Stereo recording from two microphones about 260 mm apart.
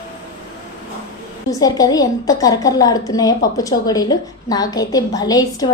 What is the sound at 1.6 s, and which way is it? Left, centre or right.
A woman's voice, centre.